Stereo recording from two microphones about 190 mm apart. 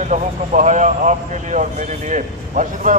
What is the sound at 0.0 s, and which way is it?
Speech, 40° right (ahead or behind).